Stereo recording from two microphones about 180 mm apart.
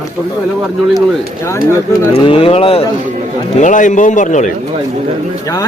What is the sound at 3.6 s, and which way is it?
Speech, 45° left (ahead or behind).